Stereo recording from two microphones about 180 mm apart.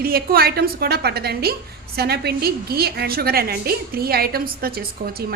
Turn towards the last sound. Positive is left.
turn(degrees=-55)  # may be behind; listen again after turning